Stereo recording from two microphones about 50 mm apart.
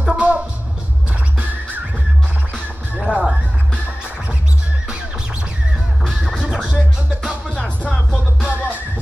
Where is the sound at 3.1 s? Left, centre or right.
Left.